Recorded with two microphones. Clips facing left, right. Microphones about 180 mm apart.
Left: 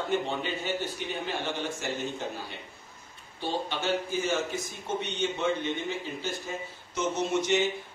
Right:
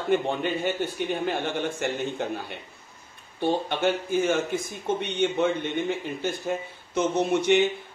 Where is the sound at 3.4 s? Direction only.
55° right (ahead or behind).